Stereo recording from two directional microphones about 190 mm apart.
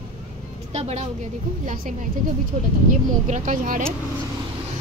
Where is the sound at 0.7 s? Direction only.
35° right (ahead or behind).